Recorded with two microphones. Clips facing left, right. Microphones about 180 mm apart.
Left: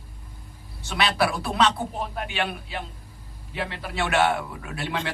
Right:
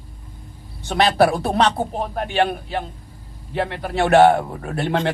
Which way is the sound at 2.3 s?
35° right (ahead or behind).